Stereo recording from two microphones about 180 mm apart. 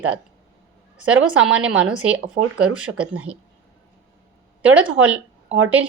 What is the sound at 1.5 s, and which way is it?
A woman's voice, 5° right (ahead or behind).